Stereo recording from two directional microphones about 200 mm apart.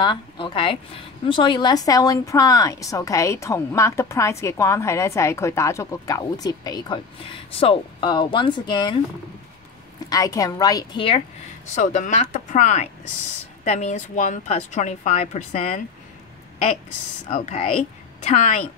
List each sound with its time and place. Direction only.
0.0 s a woman's voice: 25° left (ahead or behind)
10.0 s a woman's voice: 20° left (ahead or behind)
11.7 s a woman's voice: 35° left (ahead or behind)
17.3 s a woman's voice: 30° left (ahead or behind)